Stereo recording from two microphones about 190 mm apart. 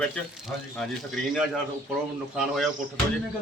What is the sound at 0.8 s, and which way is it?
Speech, centre (ahead or behind).